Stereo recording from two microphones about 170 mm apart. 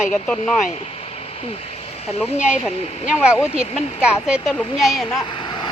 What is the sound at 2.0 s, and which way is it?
Speech, 35° left (ahead or behind).